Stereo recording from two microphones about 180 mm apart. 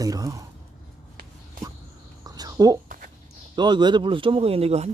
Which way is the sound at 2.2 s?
20° right (ahead or behind).